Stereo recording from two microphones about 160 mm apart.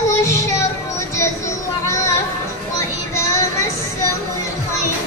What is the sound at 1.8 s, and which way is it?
Music, 20° left (ahead or behind).